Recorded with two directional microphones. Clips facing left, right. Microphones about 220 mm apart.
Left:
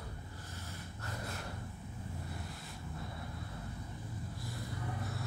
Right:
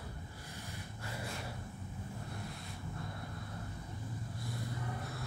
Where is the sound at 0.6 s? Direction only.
10° right (ahead or behind).